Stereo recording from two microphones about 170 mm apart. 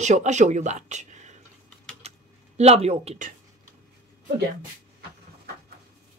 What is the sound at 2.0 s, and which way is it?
Typing, 40° right (ahead or behind).